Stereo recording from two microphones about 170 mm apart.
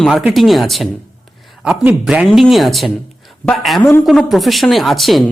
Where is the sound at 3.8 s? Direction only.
10° left (ahead or behind).